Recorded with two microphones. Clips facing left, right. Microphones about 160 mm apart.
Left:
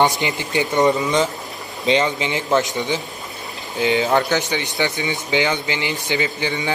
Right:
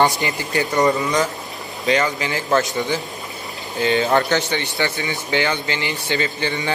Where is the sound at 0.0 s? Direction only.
20° left (ahead or behind).